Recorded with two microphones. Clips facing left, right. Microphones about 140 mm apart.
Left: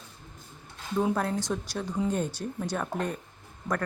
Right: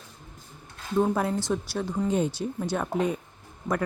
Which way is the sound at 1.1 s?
5° right (ahead or behind).